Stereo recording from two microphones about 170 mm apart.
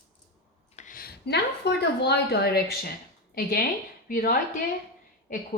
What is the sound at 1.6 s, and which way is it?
Speech, 80° left.